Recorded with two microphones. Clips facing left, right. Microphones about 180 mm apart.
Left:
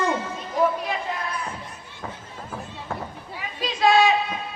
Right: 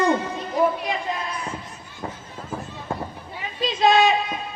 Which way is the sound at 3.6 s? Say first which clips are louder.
Right 1 dB; 20° right (ahead or behind).